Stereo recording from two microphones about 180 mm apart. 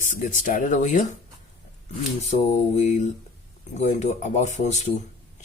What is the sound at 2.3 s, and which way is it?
Speech, 40° left (ahead or behind).